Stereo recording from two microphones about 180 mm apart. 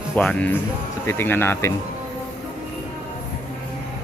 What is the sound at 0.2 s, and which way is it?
Music, 5° left (ahead or behind).